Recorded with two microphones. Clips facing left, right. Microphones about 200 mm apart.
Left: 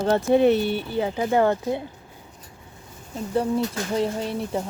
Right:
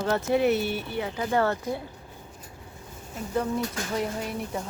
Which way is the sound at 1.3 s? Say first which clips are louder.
Left 4 dB; 15° left (ahead or behind).